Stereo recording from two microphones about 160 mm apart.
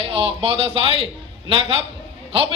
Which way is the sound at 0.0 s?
35° right (ahead or behind).